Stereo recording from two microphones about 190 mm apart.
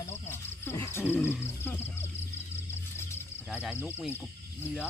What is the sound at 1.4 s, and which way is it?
Music, 15° left (ahead or behind).